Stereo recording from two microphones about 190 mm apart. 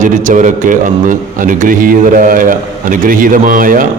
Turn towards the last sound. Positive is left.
turn(degrees=-45)  # may be behind; listen again after turning